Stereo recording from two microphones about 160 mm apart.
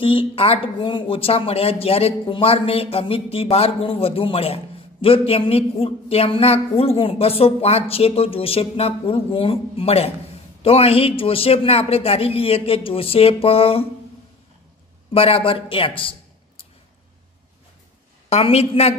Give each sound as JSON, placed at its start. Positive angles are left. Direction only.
{"t": 0.0, "sound": "speech", "side_deg": 35}
{"t": 15.1, "sound": "a man's voice", "side_deg": 35}
{"t": 18.3, "sound": "speech", "side_deg": 40}